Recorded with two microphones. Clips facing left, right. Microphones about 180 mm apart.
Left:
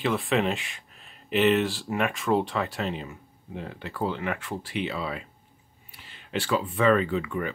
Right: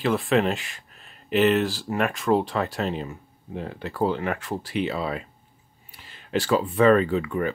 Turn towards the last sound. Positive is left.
turn(degrees=-40)  # may be behind; listen again after turning